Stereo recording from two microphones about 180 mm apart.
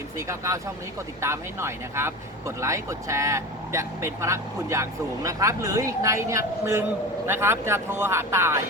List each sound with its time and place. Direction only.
0.2 s speech: 15° right (ahead or behind)